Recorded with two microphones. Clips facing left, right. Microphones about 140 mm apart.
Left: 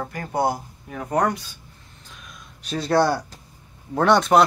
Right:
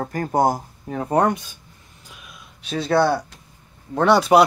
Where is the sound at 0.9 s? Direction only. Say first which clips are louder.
Right 3 dB; 30° right (ahead or behind).